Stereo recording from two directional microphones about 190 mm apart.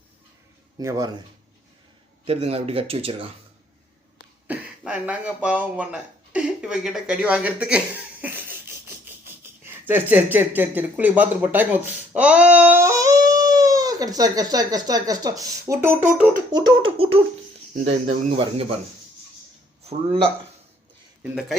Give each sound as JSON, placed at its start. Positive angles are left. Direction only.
{"t": 0.8, "sound": "speech", "side_deg": -15}
{"t": 2.2, "sound": "speech", "side_deg": -30}
{"t": 4.4, "sound": "speech", "side_deg": -5}
{"t": 19.8, "sound": "a man's voice", "side_deg": -30}